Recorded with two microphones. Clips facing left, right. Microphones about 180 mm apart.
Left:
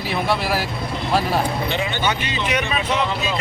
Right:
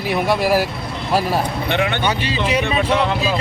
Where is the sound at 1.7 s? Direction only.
60° right (ahead or behind).